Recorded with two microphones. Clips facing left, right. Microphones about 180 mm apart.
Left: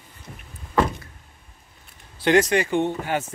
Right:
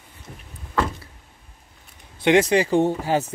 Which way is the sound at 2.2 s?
25° right (ahead or behind).